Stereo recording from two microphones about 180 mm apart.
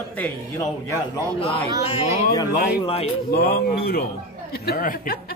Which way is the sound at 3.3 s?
60° left (ahead or behind).